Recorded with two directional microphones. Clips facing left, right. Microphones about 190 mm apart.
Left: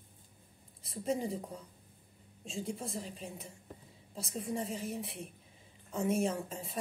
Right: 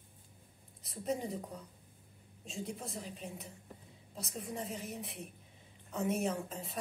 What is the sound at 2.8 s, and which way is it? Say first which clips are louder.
A woman's voice: left 3 dB; centre (ahead or behind).